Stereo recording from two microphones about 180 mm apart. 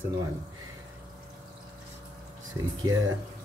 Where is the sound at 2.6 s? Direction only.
25° right (ahead or behind).